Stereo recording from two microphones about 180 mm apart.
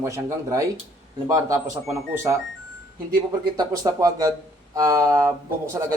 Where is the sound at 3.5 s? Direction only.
20° right (ahead or behind).